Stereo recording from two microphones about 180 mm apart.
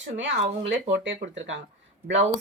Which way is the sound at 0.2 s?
85° right.